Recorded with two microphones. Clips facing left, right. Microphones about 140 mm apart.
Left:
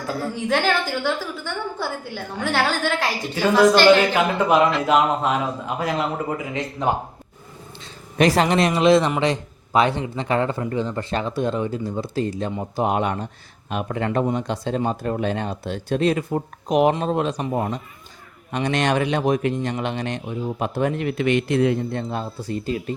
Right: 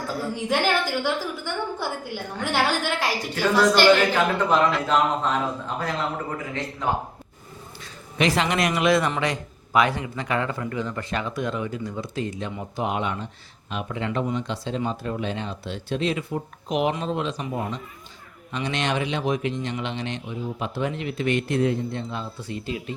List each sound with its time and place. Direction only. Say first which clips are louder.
0.4 s a woman's voice: left 2 dB; 15° right (ahead or behind)
3.3 s a man's voice: left 4 dB; 15° left (ahead or behind)
8.2 s speech: left 5 dB; 40° left (ahead or behind)
8.5 s speech: left 5 dB; 30° left (ahead or behind); by 21.8 s 90° left
21.8 s speech: left 4 dB; 50° left (ahead or behind)